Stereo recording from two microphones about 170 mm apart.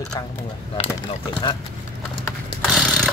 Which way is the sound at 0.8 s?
30° left (ahead or behind).